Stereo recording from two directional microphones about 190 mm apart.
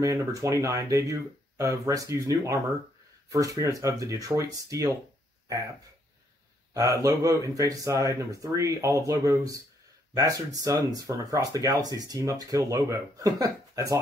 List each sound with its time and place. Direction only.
0.0 s speech: 15° right (ahead or behind)
6.7 s speech: 15° right (ahead or behind)